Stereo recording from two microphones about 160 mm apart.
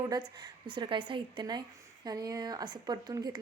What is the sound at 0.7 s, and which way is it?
A woman's voice, 30° right (ahead or behind).